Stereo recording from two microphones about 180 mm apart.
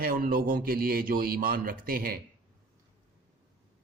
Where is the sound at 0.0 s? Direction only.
55° right (ahead or behind).